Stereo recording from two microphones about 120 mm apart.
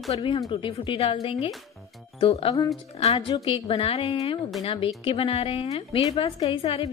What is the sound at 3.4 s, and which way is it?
A woman's voice, 50° left (ahead or behind).